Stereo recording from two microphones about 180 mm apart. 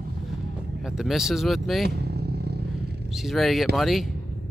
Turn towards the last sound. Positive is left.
turn(degrees=0)  # may be behind; listen again after turning